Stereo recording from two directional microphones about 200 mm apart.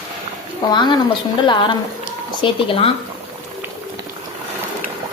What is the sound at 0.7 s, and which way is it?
Speech, 20° left (ahead or behind).